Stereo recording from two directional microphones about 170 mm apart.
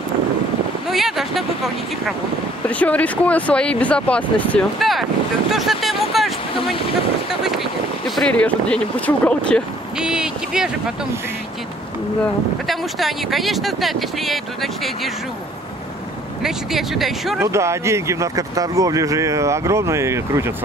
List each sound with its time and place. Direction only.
0.8 s speech: centre (ahead or behind)
9.9 s speech: 5° right (ahead or behind)
12.6 s speech: centre (ahead or behind)
16.4 s speech: centre (ahead or behind)
17.4 s speech: 15° right (ahead or behind)